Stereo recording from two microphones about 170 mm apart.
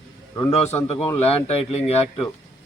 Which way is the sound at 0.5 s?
40° left (ahead or behind).